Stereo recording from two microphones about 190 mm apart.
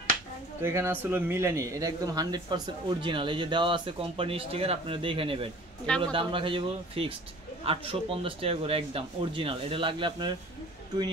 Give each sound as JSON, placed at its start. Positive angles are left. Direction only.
{"t": 0.6, "sound": "a man's voice", "side_deg": -15}
{"t": 5.9, "sound": "speech", "side_deg": 5}
{"t": 6.1, "sound": "a man's voice", "side_deg": -25}